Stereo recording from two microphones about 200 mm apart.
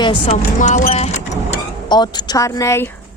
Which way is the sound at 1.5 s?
20° left (ahead or behind).